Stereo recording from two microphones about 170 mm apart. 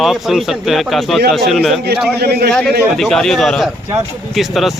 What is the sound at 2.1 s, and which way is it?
Speech, 70° right (ahead or behind).